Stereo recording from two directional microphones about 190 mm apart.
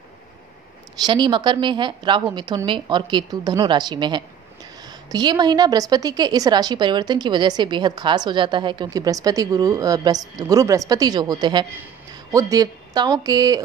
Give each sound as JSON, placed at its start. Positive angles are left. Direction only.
{"t": 1.0, "sound": "a woman's voice", "side_deg": -25}